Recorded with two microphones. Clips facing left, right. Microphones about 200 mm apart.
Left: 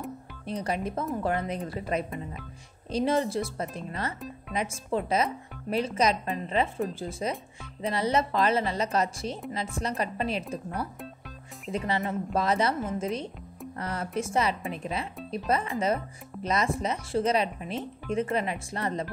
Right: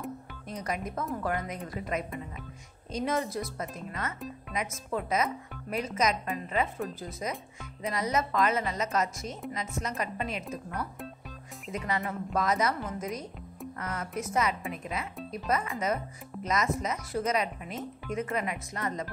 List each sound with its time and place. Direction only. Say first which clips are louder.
0.5 s a woman's voice: left 4 dB; 30° left (ahead or behind)